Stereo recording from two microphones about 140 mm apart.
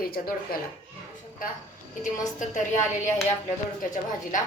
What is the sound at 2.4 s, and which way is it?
A woman's voice, 60° left (ahead or behind).